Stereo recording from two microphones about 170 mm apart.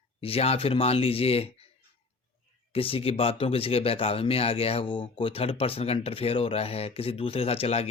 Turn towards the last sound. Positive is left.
turn(degrees=35)  # may be behind; listen again after turning